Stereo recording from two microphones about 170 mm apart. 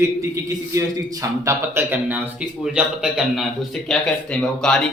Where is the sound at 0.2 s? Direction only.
20° right (ahead or behind).